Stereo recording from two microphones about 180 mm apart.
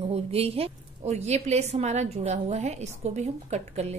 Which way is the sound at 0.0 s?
35° right (ahead or behind).